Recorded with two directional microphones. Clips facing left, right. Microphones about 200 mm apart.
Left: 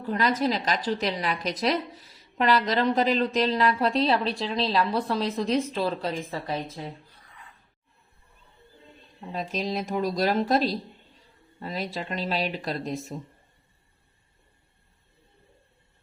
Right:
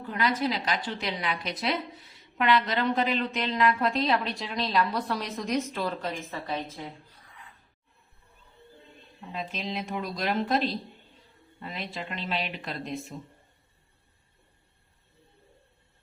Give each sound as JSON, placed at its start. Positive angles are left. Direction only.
{"t": 0.1, "sound": "a woman's voice", "side_deg": 40}
{"t": 9.3, "sound": "a woman's voice", "side_deg": 40}